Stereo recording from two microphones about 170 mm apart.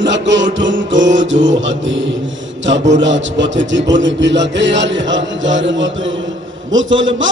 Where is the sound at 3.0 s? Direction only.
90° right.